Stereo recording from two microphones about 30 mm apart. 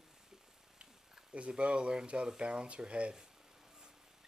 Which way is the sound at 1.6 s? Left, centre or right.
Right.